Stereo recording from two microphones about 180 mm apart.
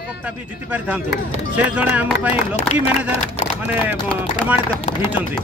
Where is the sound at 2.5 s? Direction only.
40° left (ahead or behind).